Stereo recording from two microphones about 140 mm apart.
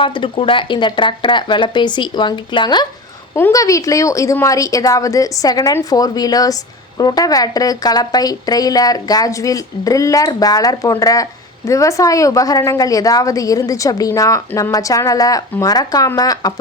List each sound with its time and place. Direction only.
0.0 s speech: 40° left (ahead or behind)
3.3 s speech: 20° left (ahead or behind)